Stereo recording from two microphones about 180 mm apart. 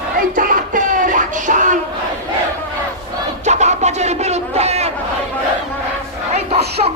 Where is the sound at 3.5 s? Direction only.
40° right (ahead or behind).